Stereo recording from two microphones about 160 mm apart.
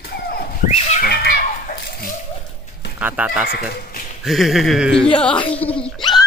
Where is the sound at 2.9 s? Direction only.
10° right (ahead or behind); by 6.0 s 5° left (ahead or behind).